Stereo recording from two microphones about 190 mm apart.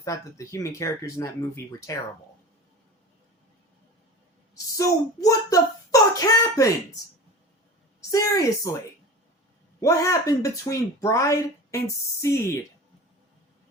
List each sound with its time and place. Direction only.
0.0 s speech: 15° left (ahead or behind)
4.5 s speech: 20° left (ahead or behind)
8.1 s speech: 15° left (ahead or behind)
9.8 s speech: 15° left (ahead or behind)